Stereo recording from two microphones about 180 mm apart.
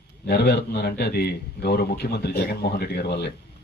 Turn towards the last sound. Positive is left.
turn(degrees=65)  # may be behind; listen again after turning